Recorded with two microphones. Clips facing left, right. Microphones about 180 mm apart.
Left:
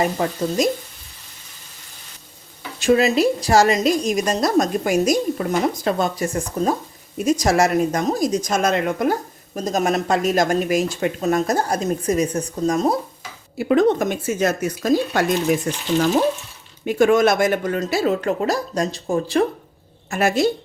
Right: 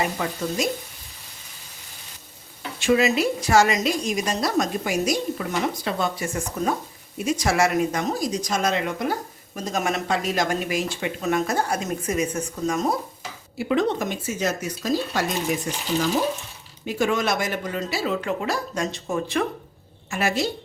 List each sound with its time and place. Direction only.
0.0 s a woman's voice: 40° left (ahead or behind)
2.8 s a woman's voice: 40° left (ahead or behind)
9.6 s a woman's voice: 40° left (ahead or behind)
13.6 s speech: 50° left (ahead or behind)
16.8 s speech: 55° left (ahead or behind); by 19.5 s 35° left (ahead or behind)
20.1 s a woman's voice: 45° left (ahead or behind)